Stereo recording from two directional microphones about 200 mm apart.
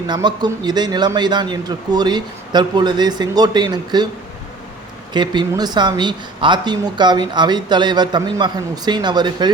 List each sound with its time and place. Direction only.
0.1 s speech: 20° right (ahead or behind)
5.1 s speech: 20° right (ahead or behind)